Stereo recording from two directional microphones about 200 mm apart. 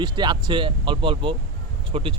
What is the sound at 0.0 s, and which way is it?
Speech, 20° right (ahead or behind).